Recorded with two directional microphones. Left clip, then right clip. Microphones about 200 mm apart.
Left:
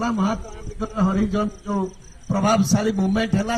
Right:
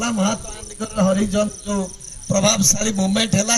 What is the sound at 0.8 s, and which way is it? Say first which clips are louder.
Speech: right 4 dB; 40° right (ahead or behind).